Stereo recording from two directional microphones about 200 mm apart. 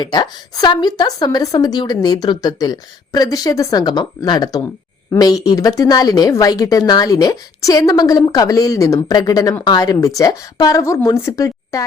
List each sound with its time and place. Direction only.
0.0 s a woman's voice: 20° left (ahead or behind)